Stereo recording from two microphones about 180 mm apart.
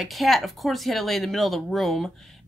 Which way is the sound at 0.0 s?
Centre (ahead or behind).